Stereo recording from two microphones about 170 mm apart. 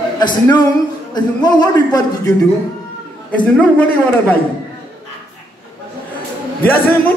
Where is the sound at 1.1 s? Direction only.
25° left (ahead or behind).